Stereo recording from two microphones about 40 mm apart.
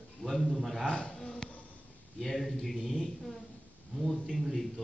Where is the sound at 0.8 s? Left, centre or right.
Left.